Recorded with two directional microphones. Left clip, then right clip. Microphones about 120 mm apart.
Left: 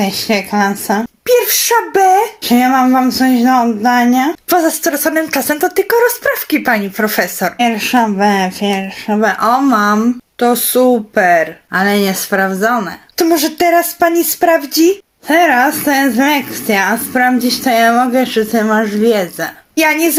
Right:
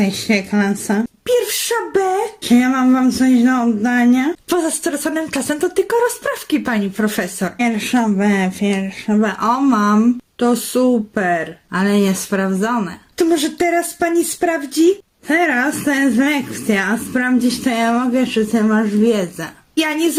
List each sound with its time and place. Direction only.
0.1 s a woman's voice: 10° right (ahead or behind)
7.6 s speech: centre (ahead or behind)
9.2 s a woman's voice: 15° right (ahead or behind)
14.4 s a woman's voice: 5° right (ahead or behind); by 20.1 s 20° right (ahead or behind)